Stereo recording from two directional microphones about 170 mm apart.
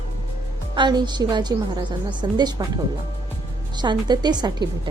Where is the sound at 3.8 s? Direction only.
25° right (ahead or behind).